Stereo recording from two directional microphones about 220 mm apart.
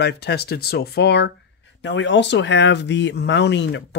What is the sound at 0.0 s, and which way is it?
Speech, 50° left (ahead or behind).